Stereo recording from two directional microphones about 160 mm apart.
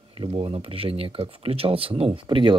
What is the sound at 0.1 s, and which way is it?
Speech, 35° right (ahead or behind).